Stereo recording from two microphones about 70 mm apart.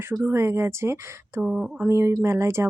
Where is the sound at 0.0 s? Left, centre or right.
Right.